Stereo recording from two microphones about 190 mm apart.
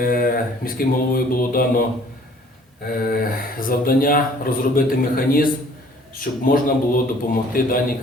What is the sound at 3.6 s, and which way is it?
A man's voice, 50° left (ahead or behind).